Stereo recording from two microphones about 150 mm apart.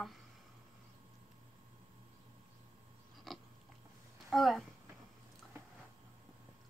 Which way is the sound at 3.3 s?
Centre (ahead or behind).